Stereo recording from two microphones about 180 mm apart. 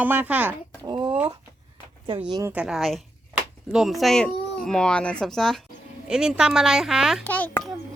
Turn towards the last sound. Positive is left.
turn(degrees=10)  # may be behind; listen again after turning